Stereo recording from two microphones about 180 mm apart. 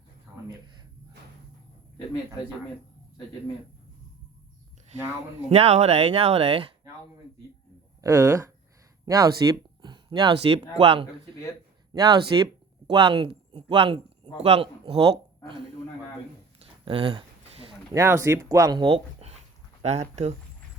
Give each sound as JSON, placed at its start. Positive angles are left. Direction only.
{"t": 5.5, "sound": "speech", "side_deg": -35}
{"t": 8.0, "sound": "speech", "side_deg": -15}
{"t": 16.6, "sound": "a sound", "side_deg": -30}
{"t": 17.9, "sound": "speech", "side_deg": -15}